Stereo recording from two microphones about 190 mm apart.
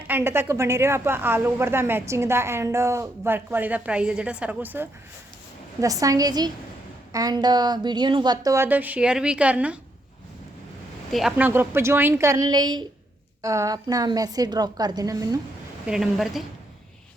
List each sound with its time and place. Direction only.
0.1 s a woman's voice: 10° right (ahead or behind)
11.1 s a woman's voice: centre (ahead or behind); by 15.4 s 20° right (ahead or behind)
15.9 s a woman's voice: centre (ahead or behind)